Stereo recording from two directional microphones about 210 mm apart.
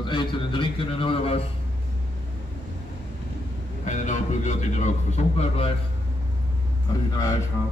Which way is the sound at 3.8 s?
35° left (ahead or behind).